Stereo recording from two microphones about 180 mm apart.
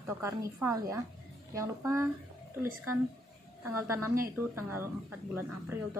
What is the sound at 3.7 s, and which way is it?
Speech, 15° right (ahead or behind).